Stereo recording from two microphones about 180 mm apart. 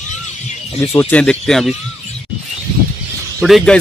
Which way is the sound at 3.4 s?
Centre (ahead or behind).